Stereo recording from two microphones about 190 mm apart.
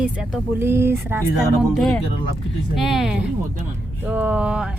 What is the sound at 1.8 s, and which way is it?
Speech, centre (ahead or behind).